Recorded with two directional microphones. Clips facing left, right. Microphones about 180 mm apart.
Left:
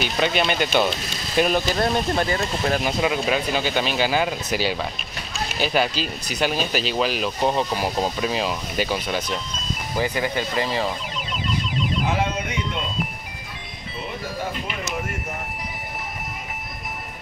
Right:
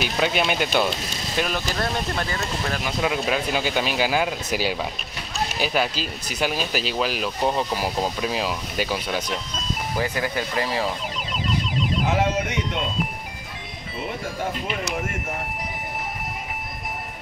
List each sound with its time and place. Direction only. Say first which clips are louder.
0.0 s speech: left 1 dB; 5° right (ahead or behind)
1.5 s speech: left 5 dB; 25° left (ahead or behind)
3.0 s speech: left 2 dB; centre (ahead or behind)